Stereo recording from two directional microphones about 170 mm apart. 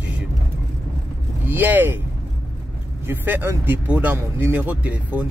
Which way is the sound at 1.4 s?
10° right (ahead or behind).